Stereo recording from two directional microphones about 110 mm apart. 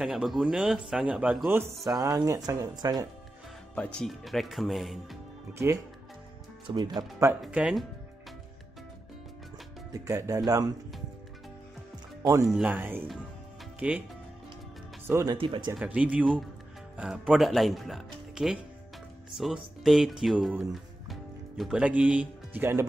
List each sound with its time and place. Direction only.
0.0 s speech: centre (ahead or behind)
1.9 s speech: 35° right (ahead or behind)
3.7 s speech: 10° left (ahead or behind)
4.1 s speech: centre (ahead or behind)
5.5 s speech: 25° right (ahead or behind)
6.7 s speech: 40° right (ahead or behind)
7.6 s speech: 15° right (ahead or behind)
9.9 s speech: 30° right (ahead or behind)
12.2 s speech: 30° right (ahead or behind)
12.4 s speech: 5° right (ahead or behind)
12.7 s speech: 15° right (ahead or behind)
15.3 s speech: 50° right (ahead or behind)
15.7 s speech: 10° right (ahead or behind)